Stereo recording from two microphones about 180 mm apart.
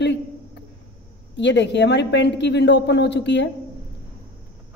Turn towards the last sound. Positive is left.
turn(degrees=75)  # may be behind; listen again after turning